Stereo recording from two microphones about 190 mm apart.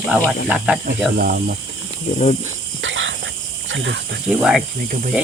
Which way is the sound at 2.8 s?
80° right.